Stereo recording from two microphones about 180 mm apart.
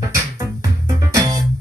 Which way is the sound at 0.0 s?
20° right (ahead or behind).